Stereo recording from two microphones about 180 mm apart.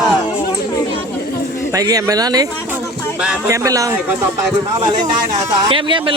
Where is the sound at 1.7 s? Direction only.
20° right (ahead or behind).